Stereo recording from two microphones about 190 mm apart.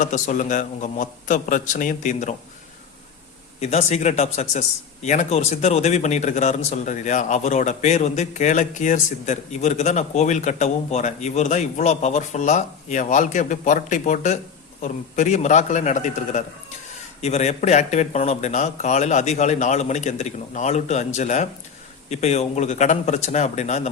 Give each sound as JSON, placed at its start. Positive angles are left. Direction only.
{"t": 0.0, "sound": "a man's voice", "side_deg": 40}
{"t": 3.6, "sound": "a man's voice", "side_deg": 35}